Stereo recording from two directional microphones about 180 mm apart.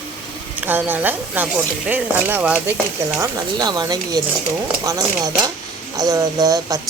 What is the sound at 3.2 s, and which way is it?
Speech, 25° right (ahead or behind).